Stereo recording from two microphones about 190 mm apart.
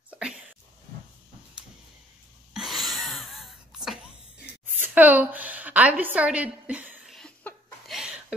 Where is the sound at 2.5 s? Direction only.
Centre (ahead or behind).